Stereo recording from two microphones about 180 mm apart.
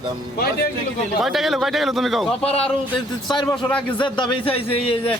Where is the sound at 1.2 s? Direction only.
Centre (ahead or behind).